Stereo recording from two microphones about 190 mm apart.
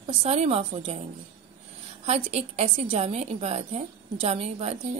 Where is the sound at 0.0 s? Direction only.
30° right (ahead or behind).